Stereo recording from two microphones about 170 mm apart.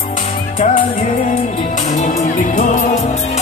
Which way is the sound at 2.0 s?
45° left (ahead or behind).